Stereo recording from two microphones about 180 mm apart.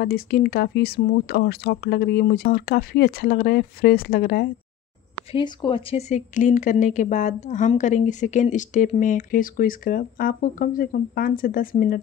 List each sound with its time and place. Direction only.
0.0 s speech: 60° left (ahead or behind)
5.3 s a woman's voice: 25° left (ahead or behind); by 12.0 s 50° left (ahead or behind)